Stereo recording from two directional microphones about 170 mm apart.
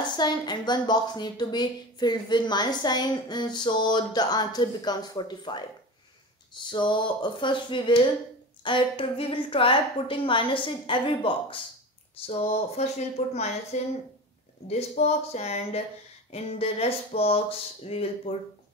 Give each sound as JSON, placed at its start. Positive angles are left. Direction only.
{"t": 0.1, "sound": "a woman's voice", "side_deg": 25}